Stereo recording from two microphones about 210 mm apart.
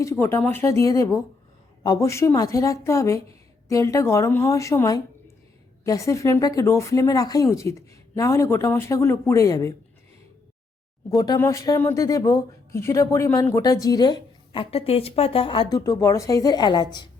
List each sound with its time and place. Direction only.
0.0 s speech: 10° left (ahead or behind)
11.2 s a woman's voice: 15° left (ahead or behind)